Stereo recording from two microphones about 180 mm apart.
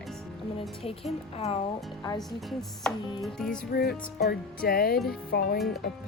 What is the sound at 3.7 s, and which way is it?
Speech, 60° left (ahead or behind).